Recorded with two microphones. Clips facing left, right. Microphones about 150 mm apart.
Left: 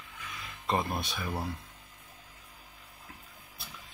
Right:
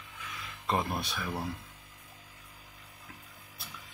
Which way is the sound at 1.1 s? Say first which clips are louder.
Even; 15° left (ahead or behind).